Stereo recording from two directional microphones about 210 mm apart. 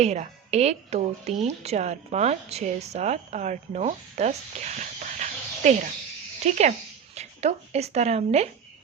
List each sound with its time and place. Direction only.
0.0 s a woman's voice: 30° right (ahead or behind)